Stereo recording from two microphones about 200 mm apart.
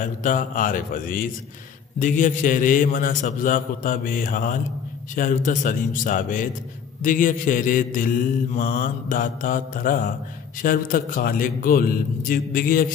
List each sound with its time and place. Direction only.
0.0 s a man's voice: 40° left (ahead or behind)